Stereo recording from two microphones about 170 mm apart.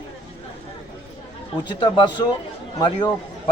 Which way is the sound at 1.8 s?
25° left (ahead or behind).